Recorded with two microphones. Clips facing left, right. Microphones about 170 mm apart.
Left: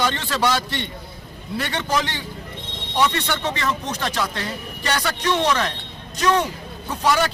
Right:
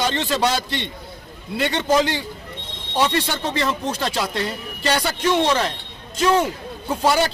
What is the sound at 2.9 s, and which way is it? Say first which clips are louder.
A man's voice: right 1 dB; 30° right (ahead or behind).